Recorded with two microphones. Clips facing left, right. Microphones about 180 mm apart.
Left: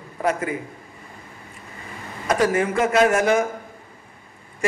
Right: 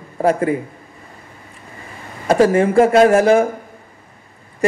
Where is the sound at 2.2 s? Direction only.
30° right (ahead or behind).